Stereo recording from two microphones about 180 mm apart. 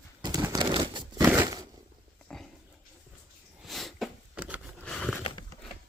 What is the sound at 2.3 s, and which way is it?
Dog, 5° left (ahead or behind).